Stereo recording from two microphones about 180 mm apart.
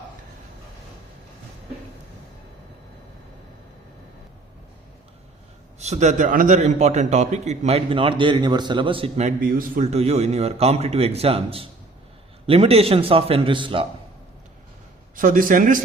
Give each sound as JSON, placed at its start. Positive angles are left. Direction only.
{"t": 5.8, "sound": "a man's voice", "side_deg": -40}
{"t": 9.4, "sound": "a man's voice", "side_deg": -55}
{"t": 15.1, "sound": "a man's voice", "side_deg": -50}